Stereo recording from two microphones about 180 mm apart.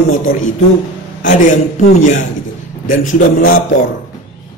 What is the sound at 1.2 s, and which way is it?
Speech, 45° left (ahead or behind).